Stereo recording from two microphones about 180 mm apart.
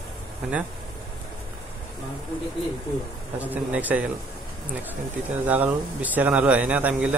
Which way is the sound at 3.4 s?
10° right (ahead or behind).